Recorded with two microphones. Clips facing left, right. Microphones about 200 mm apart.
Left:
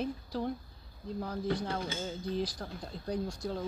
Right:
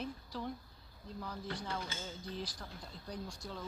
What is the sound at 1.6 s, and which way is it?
Speech, 60° left (ahead or behind).